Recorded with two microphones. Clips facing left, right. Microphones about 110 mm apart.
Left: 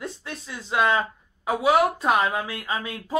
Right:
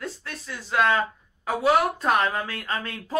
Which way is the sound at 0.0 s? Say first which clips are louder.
Left 1 dB; 20° left (ahead or behind).